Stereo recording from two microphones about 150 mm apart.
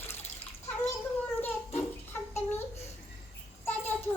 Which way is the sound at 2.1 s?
15° left (ahead or behind).